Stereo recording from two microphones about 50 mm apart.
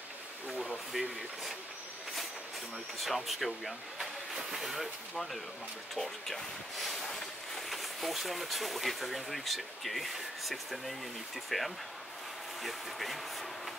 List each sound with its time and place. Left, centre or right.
0.9 s speech: centre
3.0 s speech: centre